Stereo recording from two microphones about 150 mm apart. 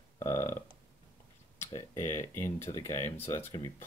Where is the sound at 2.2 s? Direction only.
15° left (ahead or behind).